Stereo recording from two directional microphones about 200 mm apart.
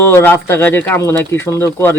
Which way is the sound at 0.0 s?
10° left (ahead or behind).